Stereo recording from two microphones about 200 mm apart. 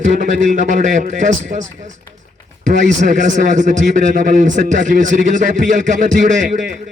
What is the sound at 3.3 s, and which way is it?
A man's voice, 40° right (ahead or behind).